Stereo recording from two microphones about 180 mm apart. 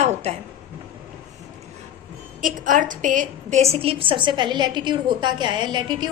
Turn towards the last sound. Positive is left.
turn(degrees=-25)  # may be behind; listen again after turning